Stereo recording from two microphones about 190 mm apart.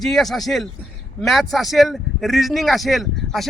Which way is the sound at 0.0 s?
Centre (ahead or behind).